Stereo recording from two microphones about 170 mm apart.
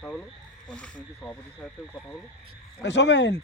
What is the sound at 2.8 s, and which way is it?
Speech, 90° left.